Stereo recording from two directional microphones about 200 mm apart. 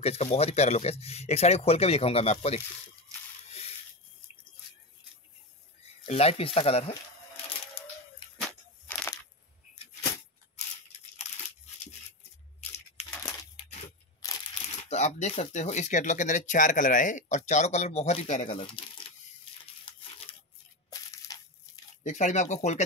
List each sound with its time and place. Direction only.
0.0 s speech: 30° left (ahead or behind)
3.4 s a sound: 30° left (ahead or behind)
6.0 s speech: 30° left (ahead or behind)
8.4 s a sound: 5° left (ahead or behind)
12.5 s a sound: 35° left (ahead or behind)
14.2 s crushing: 15° left (ahead or behind)
14.9 s speech: 35° left (ahead or behind)
19.8 s crumpling: 30° left (ahead or behind)
20.9 s crushing: 15° left (ahead or behind)
22.0 s speech: 35° left (ahead or behind)